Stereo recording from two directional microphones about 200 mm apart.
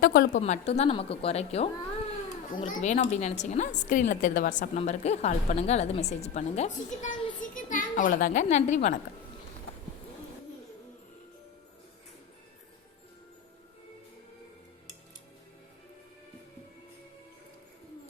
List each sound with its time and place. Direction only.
0.0 s a woman's voice: 50° left (ahead or behind)
0.4 s a woman's voice: 35° left (ahead or behind)
7.5 s a child's voice: 40° left (ahead or behind)